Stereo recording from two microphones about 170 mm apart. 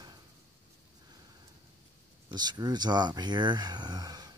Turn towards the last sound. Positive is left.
turn(degrees=-20)  # may be behind; listen again after turning